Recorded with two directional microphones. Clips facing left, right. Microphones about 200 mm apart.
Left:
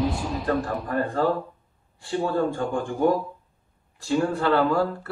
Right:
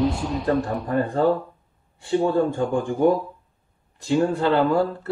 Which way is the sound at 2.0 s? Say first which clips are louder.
Right 4 dB; 20° right (ahead or behind).